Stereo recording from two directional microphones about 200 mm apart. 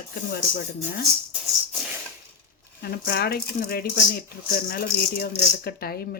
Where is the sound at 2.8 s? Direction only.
50° left (ahead or behind).